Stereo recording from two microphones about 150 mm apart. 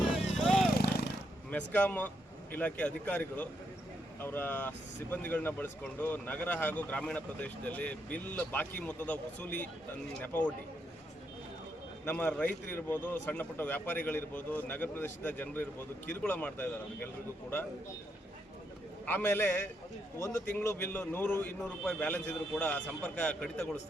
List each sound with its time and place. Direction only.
0.3 s vehicle: 5° left (ahead or behind)
0.8 s a sound: 90° left
1.5 s speech: 10° left (ahead or behind)
12.0 s speech: 10° left (ahead or behind)
19.0 s speech: 15° left (ahead or behind)